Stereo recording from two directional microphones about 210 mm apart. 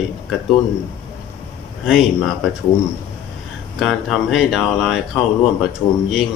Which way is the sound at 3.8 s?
Centre (ahead or behind).